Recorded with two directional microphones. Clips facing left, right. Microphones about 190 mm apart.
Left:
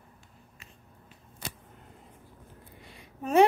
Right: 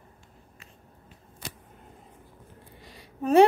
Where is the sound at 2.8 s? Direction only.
35° right (ahead or behind).